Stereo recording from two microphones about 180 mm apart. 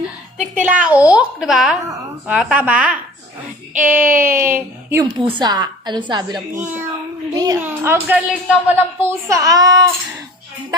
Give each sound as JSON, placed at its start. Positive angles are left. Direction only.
{"t": 0.6, "sound": "a woman's voice", "side_deg": -5}